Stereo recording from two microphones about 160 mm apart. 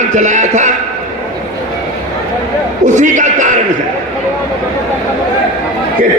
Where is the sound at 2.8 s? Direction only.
50° right (ahead or behind).